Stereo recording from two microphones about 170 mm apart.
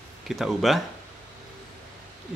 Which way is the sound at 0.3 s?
Centre (ahead or behind).